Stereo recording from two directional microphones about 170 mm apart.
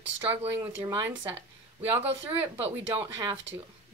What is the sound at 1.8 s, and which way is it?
Speech, 10° right (ahead or behind).